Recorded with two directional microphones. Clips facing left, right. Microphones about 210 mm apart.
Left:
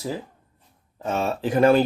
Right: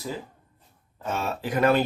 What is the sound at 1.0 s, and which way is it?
Speech, 30° left (ahead or behind).